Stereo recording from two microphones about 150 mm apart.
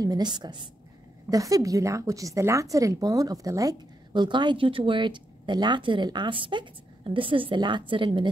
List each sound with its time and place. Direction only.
0.0 s a woman's voice: 25° right (ahead or behind)